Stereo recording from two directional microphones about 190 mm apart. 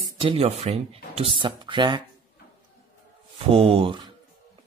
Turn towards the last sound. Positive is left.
turn(degrees=-25)  # may be behind; listen again after turning